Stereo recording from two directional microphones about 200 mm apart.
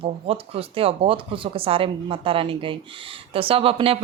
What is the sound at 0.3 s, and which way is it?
Speech, 30° right (ahead or behind).